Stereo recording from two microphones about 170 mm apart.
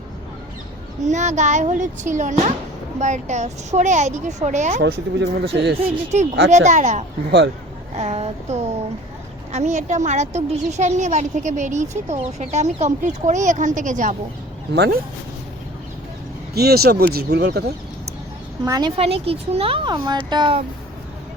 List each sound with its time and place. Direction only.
1.0 s a woman's voice: 45° right (ahead or behind)
4.8 s speech: 70° right (ahead or behind)
5.8 s a woman's voice: 45° right (ahead or behind)
7.3 s speech: 90° right
7.9 s a woman's voice: 40° right (ahead or behind)
14.7 s speech: 75° right (ahead or behind)
16.6 s speech: 65° right (ahead or behind)
17.2 s speech: 75° right (ahead or behind)
18.6 s speech: 20° right (ahead or behind)